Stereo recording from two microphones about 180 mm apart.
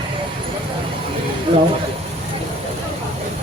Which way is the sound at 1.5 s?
30° right (ahead or behind).